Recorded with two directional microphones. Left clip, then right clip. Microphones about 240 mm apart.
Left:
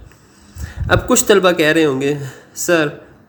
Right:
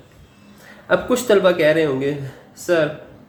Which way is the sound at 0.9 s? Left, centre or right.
Left.